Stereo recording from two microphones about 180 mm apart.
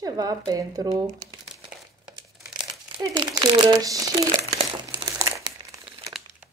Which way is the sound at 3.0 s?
25° right (ahead or behind).